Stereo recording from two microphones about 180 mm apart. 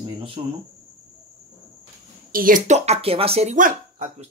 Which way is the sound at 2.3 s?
50° right (ahead or behind).